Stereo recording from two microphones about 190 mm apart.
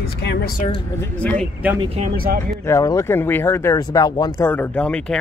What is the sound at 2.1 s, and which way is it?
Speech, 50° right (ahead or behind).